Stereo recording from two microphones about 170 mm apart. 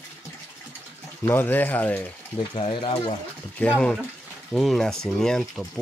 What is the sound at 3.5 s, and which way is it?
Speech, 10° left (ahead or behind).